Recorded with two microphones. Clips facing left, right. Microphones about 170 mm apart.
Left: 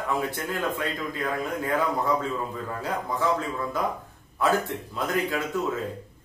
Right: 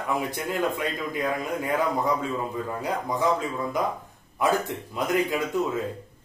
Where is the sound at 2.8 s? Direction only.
15° right (ahead or behind).